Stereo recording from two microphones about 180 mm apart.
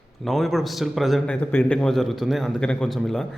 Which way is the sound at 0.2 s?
Centre (ahead or behind).